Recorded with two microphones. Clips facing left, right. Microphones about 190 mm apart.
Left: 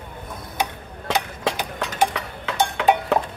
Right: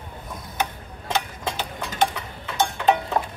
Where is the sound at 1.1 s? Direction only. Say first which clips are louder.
Left 3 dB; 80° left.